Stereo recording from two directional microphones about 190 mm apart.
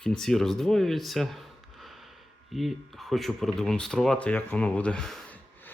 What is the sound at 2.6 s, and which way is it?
Speech, centre (ahead or behind).